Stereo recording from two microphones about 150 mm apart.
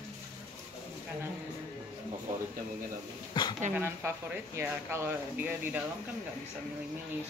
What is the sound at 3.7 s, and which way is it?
Speech, 10° right (ahead or behind).